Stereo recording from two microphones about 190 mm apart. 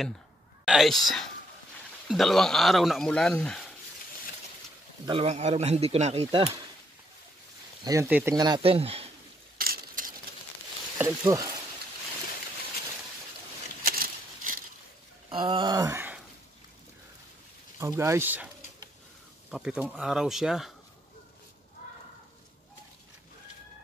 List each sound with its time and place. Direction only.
0.7 s speech: centre (ahead or behind)
5.0 s speech: 30° right (ahead or behind)
7.8 s speech: 15° right (ahead or behind)
8.4 s speech: 25° right (ahead or behind)
9.6 s a sound: 50° right (ahead or behind)
11.0 s speech: 15° right (ahead or behind)
13.8 s a sound: 50° right (ahead or behind)
15.2 s speech: 25° right (ahead or behind)
17.7 s speech: 15° right (ahead or behind)
19.5 s speech: 5° right (ahead or behind)